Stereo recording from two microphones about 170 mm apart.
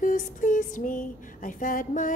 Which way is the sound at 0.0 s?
50° left (ahead or behind).